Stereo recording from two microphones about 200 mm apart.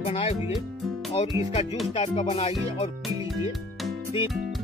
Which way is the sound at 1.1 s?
25° left (ahead or behind).